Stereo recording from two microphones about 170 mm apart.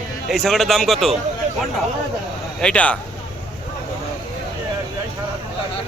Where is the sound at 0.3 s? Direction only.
Centre (ahead or behind).